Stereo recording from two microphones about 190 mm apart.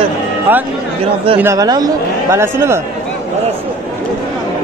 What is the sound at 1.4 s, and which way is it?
Speech, 15° right (ahead or behind).